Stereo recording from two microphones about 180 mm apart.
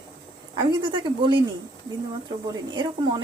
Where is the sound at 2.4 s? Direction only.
20° right (ahead or behind).